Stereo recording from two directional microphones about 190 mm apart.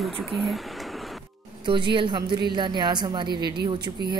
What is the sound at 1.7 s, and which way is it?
A woman's voice, 25° right (ahead or behind).